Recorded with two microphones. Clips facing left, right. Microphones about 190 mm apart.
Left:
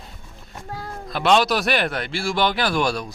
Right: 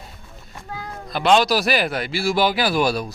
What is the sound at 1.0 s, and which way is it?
Speech, centre (ahead or behind).